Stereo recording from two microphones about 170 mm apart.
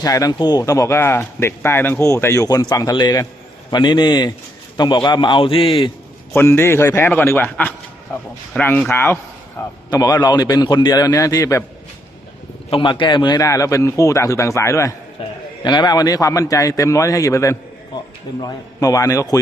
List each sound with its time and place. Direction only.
0.0 s speech: 20° left (ahead or behind)
6.3 s a man's voice: 15° left (ahead or behind)
12.7 s speech: 30° left (ahead or behind)
15.2 s a man's voice: 30° left (ahead or behind)